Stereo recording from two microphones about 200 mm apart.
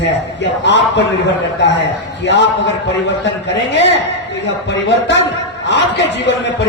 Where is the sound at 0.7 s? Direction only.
60° left (ahead or behind).